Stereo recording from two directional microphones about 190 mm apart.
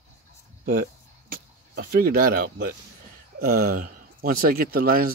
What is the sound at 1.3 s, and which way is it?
Speech, 50° right (ahead or behind).